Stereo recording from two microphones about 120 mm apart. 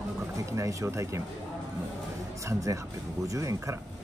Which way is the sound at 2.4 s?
25° right (ahead or behind).